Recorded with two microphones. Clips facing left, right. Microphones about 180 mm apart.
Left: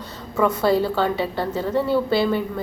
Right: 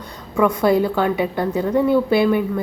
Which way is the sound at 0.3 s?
15° right (ahead or behind).